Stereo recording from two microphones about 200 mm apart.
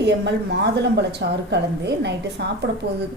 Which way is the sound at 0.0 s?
55° right (ahead or behind).